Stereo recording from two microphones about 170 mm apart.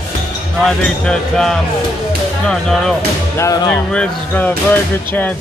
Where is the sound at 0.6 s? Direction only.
5° left (ahead or behind).